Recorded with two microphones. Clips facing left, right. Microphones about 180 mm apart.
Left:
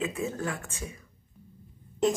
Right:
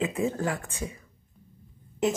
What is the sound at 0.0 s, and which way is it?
Speech, 35° right (ahead or behind).